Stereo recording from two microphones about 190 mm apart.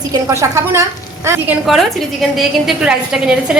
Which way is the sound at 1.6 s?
Centre (ahead or behind).